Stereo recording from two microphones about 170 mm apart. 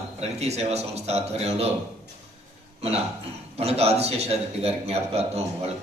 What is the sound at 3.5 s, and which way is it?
A man's voice, 40° right (ahead or behind).